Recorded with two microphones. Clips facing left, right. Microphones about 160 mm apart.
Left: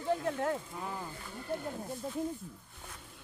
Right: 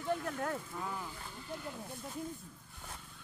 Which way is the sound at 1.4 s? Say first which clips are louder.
Left 7 dB; 50° left (ahead or behind).